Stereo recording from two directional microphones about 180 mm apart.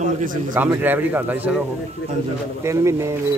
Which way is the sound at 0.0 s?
50° right (ahead or behind).